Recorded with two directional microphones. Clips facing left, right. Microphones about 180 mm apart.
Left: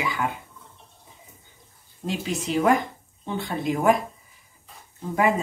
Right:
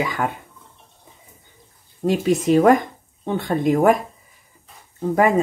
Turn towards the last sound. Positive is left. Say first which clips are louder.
# right 5 dB
turn(degrees=-45)  # may be behind; listen again after turning